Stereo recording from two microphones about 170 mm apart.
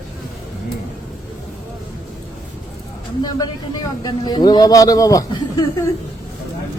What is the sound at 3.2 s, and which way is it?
Speech, 25° left (ahead or behind).